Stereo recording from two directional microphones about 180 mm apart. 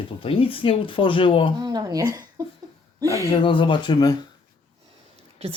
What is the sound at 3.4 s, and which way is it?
Speech, 25° left (ahead or behind).